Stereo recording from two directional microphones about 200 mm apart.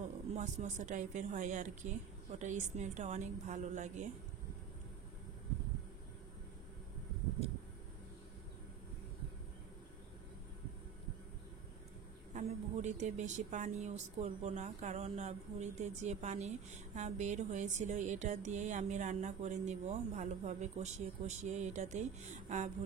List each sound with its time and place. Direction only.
0.3 s a woman's voice: 35° right (ahead or behind)
12.4 s a woman's voice: 35° right (ahead or behind)